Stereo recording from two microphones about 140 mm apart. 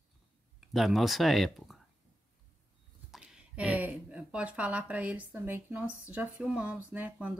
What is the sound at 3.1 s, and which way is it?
Speech, 5° right (ahead or behind).